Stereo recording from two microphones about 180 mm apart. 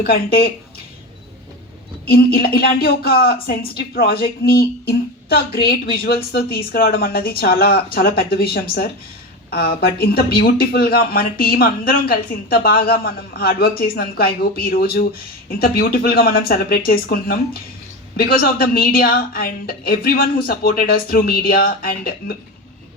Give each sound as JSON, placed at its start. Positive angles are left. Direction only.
{"t": 0.0, "sound": "speech", "side_deg": 55}
{"t": 2.0, "sound": "speech", "side_deg": 60}